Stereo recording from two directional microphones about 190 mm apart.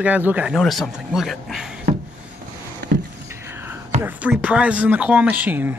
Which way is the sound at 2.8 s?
60° right (ahead or behind).